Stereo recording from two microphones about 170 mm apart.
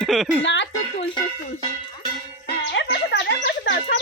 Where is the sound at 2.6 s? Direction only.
90° left.